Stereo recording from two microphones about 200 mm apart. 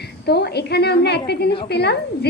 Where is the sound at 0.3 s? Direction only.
55° left (ahead or behind).